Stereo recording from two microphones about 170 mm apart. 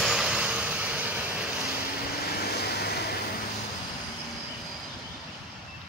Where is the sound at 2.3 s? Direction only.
70° left (ahead or behind).